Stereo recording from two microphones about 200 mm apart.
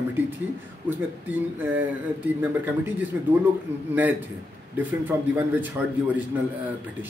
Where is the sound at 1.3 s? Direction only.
10° right (ahead or behind).